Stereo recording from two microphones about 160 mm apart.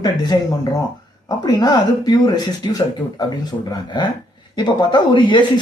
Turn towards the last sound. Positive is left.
turn(degrees=30)  # may be behind; listen again after turning